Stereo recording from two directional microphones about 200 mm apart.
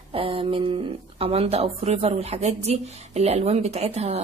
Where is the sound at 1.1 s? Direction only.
30° right (ahead or behind).